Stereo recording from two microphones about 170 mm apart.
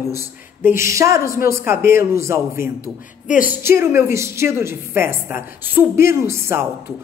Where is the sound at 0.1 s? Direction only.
15° right (ahead or behind).